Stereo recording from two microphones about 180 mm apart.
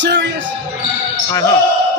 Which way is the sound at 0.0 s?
80° right.